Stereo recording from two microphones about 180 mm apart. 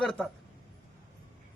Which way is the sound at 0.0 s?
Centre (ahead or behind).